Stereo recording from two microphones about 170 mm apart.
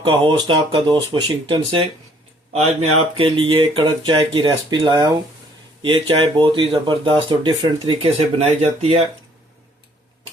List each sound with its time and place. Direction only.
0.0 s speech: 30° right (ahead or behind)